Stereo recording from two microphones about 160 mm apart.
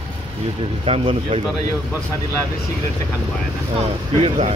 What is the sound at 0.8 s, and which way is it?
Speech, 35° right (ahead or behind).